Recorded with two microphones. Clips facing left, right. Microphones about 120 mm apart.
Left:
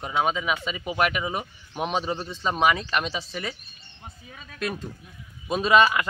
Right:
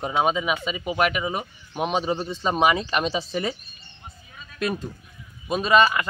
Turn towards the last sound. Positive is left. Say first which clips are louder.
# even
turn(degrees=5)  # may be behind; listen again after turning